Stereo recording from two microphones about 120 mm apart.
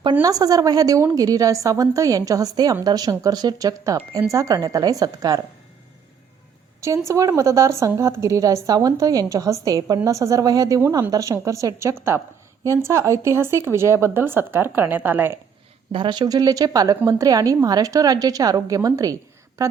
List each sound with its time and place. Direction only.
0.2 s a woman's voice: 30° right (ahead or behind)
7.1 s a woman's voice: 25° right (ahead or behind)
15.9 s a woman's voice: 40° right (ahead or behind)